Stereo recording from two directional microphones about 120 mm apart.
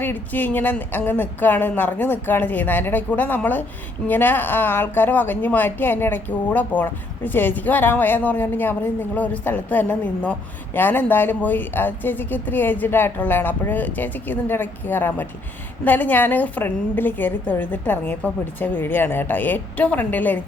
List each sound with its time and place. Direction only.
0.0 s a woman's voice: 15° left (ahead or behind)